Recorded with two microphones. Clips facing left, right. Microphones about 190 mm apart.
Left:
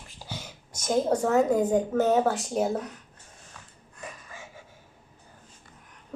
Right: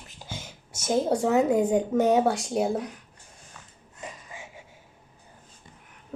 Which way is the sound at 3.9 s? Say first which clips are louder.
Right 1 dB; 20° right (ahead or behind).